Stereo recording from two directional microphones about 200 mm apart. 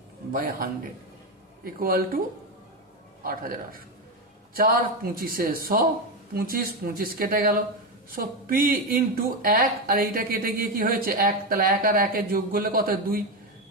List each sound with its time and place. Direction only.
0.3 s speech: 45° right (ahead or behind)
3.2 s speech: 45° right (ahead or behind)